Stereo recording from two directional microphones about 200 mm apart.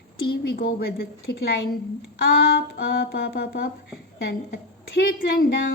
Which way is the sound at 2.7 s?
55° left (ahead or behind).